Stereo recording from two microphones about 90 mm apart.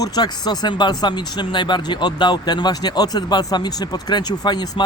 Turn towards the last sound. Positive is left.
turn(degrees=50)  # may be behind; listen again after turning